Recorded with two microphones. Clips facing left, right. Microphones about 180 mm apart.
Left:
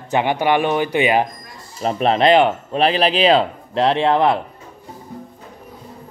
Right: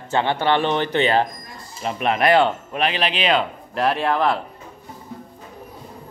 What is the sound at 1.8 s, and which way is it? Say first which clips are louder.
Speech: left 5 dB; 35° left (ahead or behind).